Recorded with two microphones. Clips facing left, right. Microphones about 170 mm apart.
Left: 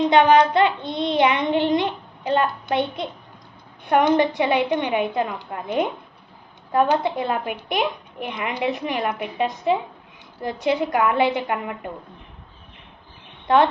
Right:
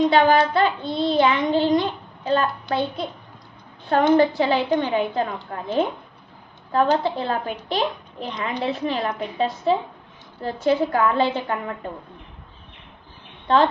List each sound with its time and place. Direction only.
0.1 s child singing: 20° left (ahead or behind)
3.8 s a woman's voice: 20° left (ahead or behind)